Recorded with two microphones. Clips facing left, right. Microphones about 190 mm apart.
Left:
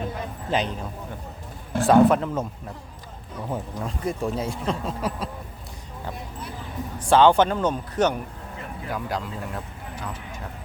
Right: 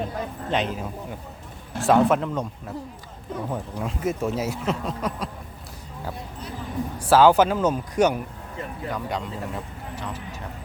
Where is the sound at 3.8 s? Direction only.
5° right (ahead or behind).